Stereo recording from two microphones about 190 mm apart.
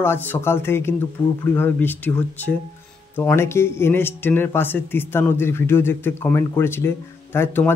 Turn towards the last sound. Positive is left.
turn(degrees=10)  # may be behind; listen again after turning